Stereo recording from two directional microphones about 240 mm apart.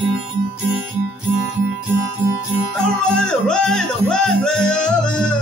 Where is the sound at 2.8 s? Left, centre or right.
Centre.